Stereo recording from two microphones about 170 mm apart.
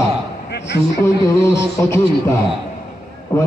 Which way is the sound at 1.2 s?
15° left (ahead or behind).